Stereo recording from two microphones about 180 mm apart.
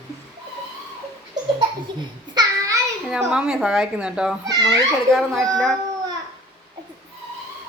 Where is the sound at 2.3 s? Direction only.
25° right (ahead or behind).